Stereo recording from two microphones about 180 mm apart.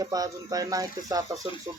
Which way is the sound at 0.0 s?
20° right (ahead or behind).